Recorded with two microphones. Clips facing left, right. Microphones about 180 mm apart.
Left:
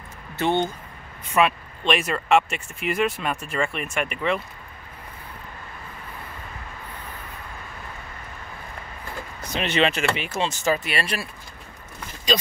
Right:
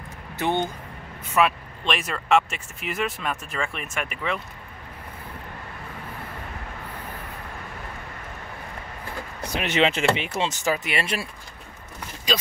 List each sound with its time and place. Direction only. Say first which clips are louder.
0.4 s speech: left 2 dB; 15° right (ahead or behind)
1.3 s speech: left 1 dB; centre (ahead or behind)
9.5 s speech: even; 15° right (ahead or behind)